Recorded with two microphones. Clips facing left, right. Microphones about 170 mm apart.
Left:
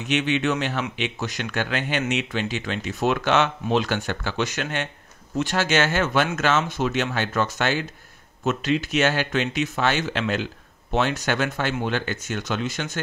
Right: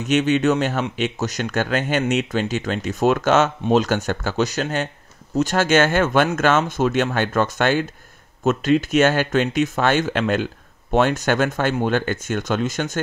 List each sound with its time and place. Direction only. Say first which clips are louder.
0.0 s speech: right 5 dB; 45° right (ahead or behind)